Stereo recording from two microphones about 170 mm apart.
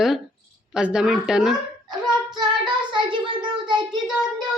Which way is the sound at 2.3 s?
25° right (ahead or behind).